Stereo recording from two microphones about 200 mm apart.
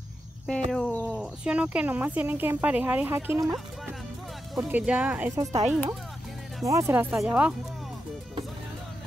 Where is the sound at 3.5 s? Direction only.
Centre (ahead or behind).